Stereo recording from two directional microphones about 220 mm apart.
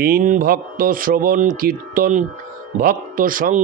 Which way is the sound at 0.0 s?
40° right (ahead or behind).